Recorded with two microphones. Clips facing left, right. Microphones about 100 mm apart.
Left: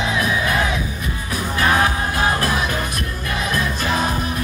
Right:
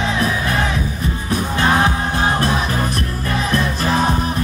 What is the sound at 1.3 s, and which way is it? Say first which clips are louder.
Music: right 2 dB; 30° right (ahead or behind).